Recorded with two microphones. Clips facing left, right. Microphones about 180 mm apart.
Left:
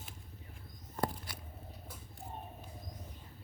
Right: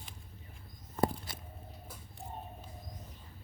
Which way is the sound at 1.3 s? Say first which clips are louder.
Right 1 dB; 25° right (ahead or behind).